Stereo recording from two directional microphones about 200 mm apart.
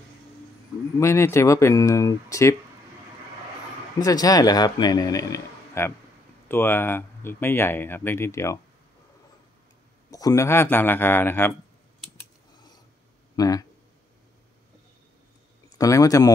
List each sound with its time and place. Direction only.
0.9 s speech: 15° left (ahead or behind)
4.0 s a man's voice: 20° left (ahead or behind)
10.1 s speech: 15° left (ahead or behind)
13.4 s speech: 20° left (ahead or behind)
15.8 s speech: 15° left (ahead or behind)